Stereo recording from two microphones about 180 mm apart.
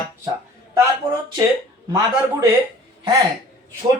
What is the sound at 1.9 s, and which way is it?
Speech, 15° right (ahead or behind).